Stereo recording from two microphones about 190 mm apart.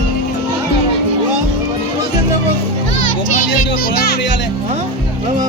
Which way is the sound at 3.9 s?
55° left (ahead or behind).